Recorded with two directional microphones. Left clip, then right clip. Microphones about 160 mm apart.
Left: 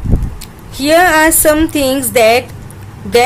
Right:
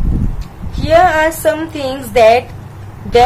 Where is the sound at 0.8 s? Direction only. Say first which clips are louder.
Left 1 dB; 40° left (ahead or behind).